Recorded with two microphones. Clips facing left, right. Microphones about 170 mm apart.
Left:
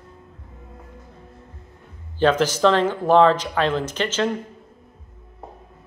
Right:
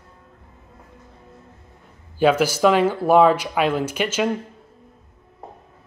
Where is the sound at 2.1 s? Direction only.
10° right (ahead or behind).